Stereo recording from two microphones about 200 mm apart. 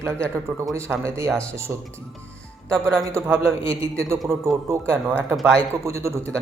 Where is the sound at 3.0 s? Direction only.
15° right (ahead or behind).